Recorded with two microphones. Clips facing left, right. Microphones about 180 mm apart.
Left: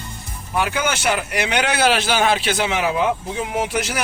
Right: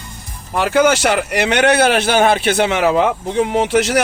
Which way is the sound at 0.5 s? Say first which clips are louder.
Right 8 dB; 75° right (ahead or behind).